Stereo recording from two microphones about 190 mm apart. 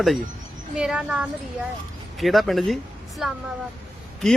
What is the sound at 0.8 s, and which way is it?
Speech, 5° right (ahead or behind).